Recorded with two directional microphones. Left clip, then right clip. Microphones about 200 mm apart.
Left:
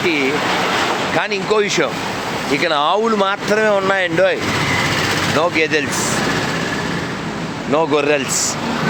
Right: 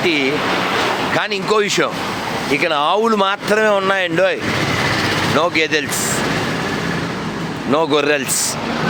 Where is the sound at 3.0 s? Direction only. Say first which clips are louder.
Right 1 dB; 25° right (ahead or behind).